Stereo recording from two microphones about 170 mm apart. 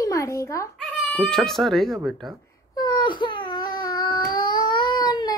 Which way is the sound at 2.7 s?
25° left (ahead or behind).